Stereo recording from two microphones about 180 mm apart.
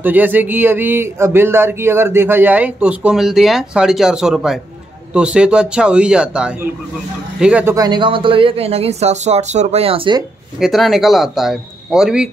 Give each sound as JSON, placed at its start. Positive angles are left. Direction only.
{"t": 0.0, "sound": "a man's voice", "side_deg": -10}
{"t": 7.7, "sound": "speech", "side_deg": -20}
{"t": 10.6, "sound": "a man's voice", "side_deg": 0}